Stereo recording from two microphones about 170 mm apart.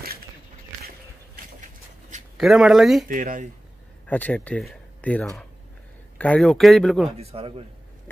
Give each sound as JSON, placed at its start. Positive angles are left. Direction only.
{"t": 2.3, "sound": "speech", "side_deg": 0}
{"t": 3.1, "sound": "speech", "side_deg": -55}
{"t": 4.1, "sound": "speech", "side_deg": 10}
{"t": 7.2, "sound": "a man's voice", "side_deg": -35}